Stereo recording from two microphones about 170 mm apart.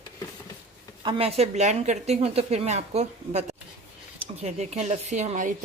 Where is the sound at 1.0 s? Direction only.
35° right (ahead or behind).